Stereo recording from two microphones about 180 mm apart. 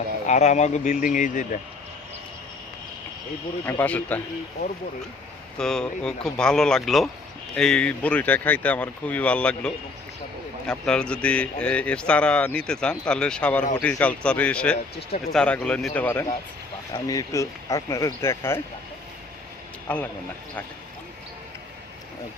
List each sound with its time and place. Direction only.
0.3 s speech: 40° left (ahead or behind)
3.7 s speech: 10° left (ahead or behind)
5.5 s speech: 5° left (ahead or behind)
19.9 s speech: 10° left (ahead or behind)